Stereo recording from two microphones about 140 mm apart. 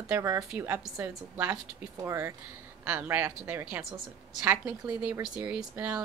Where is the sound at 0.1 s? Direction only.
20° right (ahead or behind).